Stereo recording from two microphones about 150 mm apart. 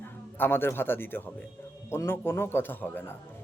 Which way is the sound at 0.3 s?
15° left (ahead or behind).